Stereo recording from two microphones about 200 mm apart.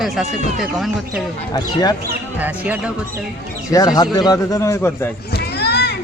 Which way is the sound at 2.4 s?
10° right (ahead or behind).